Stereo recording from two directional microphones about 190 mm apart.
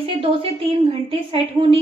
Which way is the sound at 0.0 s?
30° right (ahead or behind).